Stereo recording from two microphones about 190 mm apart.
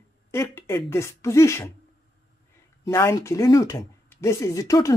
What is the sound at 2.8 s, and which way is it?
Speech, 15° left (ahead or behind).